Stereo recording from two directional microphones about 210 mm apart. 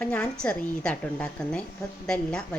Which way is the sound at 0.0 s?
5° left (ahead or behind).